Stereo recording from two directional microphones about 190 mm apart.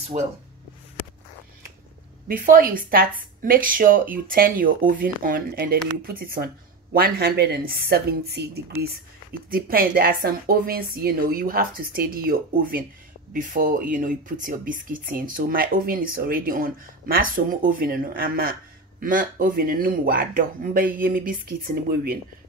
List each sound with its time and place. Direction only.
0.1 s speech: 40° right (ahead or behind)
2.2 s speech: 45° right (ahead or behind)
9.3 s speech: 50° right (ahead or behind)